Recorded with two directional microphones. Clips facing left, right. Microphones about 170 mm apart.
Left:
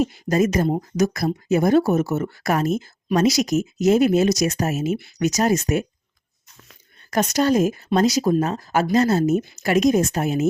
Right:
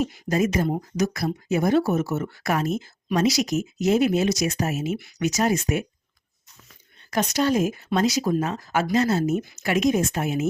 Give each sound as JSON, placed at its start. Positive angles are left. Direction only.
{"t": 0.0, "sound": "speech", "side_deg": 40}
{"t": 7.1, "sound": "speech", "side_deg": 45}
{"t": 9.4, "sound": "a woman's voice", "side_deg": 25}
{"t": 9.6, "sound": "speech", "side_deg": 40}